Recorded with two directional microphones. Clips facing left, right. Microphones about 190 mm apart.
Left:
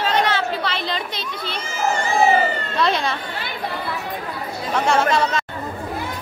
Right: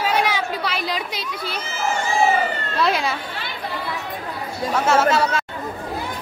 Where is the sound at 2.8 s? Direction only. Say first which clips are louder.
Even; 5° right (ahead or behind).